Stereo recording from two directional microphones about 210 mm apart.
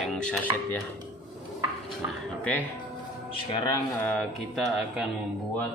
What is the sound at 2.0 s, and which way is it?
Speech, 10° right (ahead or behind).